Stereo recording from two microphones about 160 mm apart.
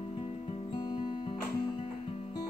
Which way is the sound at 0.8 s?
25° left (ahead or behind).